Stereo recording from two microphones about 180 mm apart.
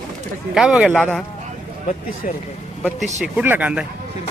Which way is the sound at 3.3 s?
10° right (ahead or behind).